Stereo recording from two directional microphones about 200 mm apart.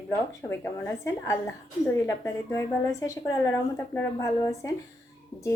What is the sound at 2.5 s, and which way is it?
A woman's voice, 15° left (ahead or behind).